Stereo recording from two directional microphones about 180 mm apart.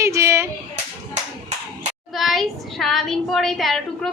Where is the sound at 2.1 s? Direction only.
Centre (ahead or behind).